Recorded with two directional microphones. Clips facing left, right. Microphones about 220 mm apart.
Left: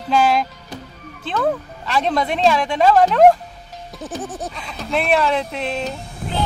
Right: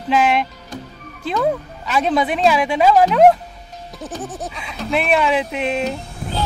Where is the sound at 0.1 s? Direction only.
5° right (ahead or behind).